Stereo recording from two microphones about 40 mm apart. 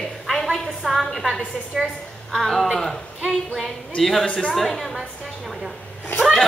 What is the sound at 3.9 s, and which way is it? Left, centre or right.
Speech, centre.